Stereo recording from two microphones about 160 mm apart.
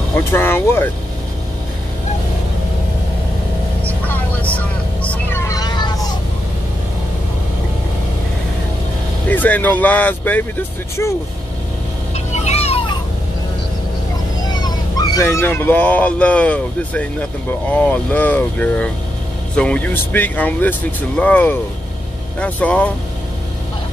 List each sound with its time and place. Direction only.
0.1 s speech: 15° left (ahead or behind)
3.8 s vehicle: 10° left (ahead or behind); by 5.9 s 25° left (ahead or behind)
9.3 s speech: 10° left (ahead or behind)
12.4 s music: 40° left (ahead or behind)
14.4 s speech: 25° left (ahead or behind); by 22.9 s 5° left (ahead or behind)